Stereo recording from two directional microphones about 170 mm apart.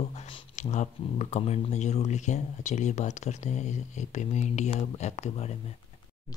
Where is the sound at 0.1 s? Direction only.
40° left (ahead or behind).